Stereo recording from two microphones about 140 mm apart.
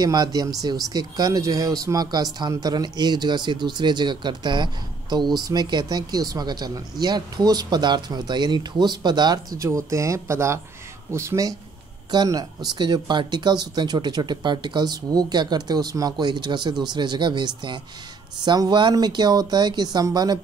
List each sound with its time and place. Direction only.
0.0 s speech: 30° right (ahead or behind)